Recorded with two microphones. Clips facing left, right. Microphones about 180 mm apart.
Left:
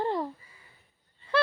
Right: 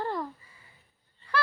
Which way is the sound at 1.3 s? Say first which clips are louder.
Left 4 dB; 25° left (ahead or behind).